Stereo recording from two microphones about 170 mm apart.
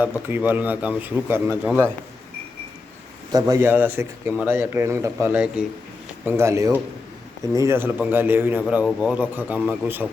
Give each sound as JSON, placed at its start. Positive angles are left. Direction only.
{"t": 0.0, "sound": "a man's voice", "side_deg": -10}
{"t": 3.3, "sound": "a man's voice", "side_deg": -20}